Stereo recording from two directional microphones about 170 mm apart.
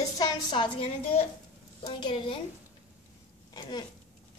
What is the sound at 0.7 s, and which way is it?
Speech, 35° left (ahead or behind).